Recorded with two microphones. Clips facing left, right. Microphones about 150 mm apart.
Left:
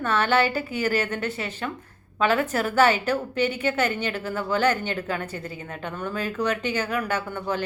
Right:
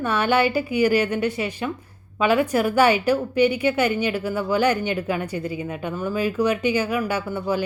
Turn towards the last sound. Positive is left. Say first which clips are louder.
# right 3 dB
turn(degrees=-10)  # may be behind; listen again after turning